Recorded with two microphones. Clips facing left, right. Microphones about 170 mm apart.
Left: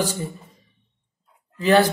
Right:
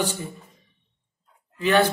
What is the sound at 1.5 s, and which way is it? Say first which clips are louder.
Speech: left 3 dB; 35° left (ahead or behind).